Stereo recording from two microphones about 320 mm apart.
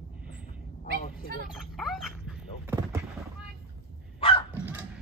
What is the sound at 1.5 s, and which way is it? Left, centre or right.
Speech, centre.